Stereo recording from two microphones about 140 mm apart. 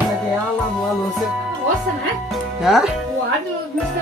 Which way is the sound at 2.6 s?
Centre (ahead or behind).